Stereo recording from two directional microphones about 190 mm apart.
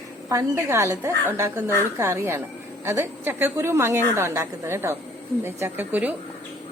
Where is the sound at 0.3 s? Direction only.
15° right (ahead or behind).